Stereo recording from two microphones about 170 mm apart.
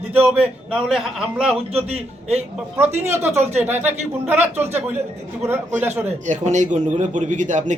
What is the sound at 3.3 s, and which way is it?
Speech, 40° right (ahead or behind).